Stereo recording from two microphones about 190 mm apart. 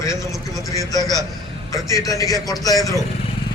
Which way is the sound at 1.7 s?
20° left (ahead or behind).